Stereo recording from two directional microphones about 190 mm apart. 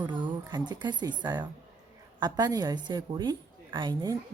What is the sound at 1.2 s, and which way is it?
A woman's voice, 25° right (ahead or behind).